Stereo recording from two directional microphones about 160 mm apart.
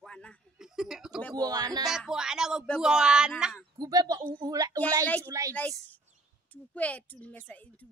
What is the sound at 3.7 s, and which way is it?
Speech, 25° right (ahead or behind).